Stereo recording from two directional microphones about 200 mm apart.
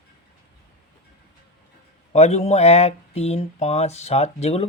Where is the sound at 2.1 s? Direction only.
35° left (ahead or behind).